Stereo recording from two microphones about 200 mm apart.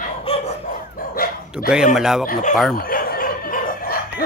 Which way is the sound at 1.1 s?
45° left (ahead or behind).